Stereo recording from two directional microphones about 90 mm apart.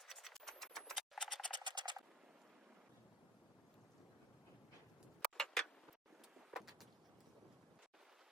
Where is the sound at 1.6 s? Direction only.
55° right (ahead or behind).